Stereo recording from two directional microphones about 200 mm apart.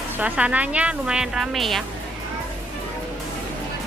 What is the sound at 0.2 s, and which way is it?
A woman's voice, 5° right (ahead or behind).